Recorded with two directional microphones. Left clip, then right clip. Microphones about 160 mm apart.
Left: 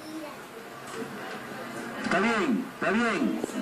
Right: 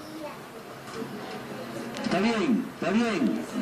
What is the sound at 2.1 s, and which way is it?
A man's voice, 5° left (ahead or behind).